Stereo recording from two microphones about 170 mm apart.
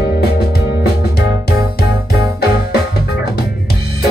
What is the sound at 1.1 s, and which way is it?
Music, 70° left (ahead or behind).